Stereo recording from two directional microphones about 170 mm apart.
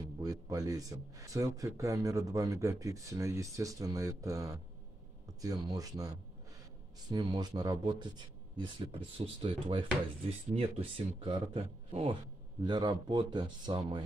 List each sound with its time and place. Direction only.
0.2 s speech: 20° right (ahead or behind)